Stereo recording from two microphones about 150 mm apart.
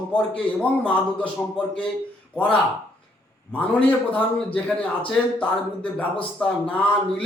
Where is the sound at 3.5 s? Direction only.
10° left (ahead or behind).